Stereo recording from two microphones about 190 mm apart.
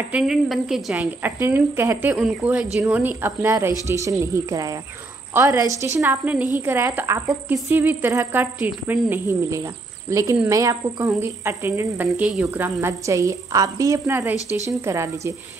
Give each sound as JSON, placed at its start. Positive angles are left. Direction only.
{"t": 0.1, "sound": "a woman's voice", "side_deg": 0}
{"t": 7.2, "sound": "a woman's voice", "side_deg": 0}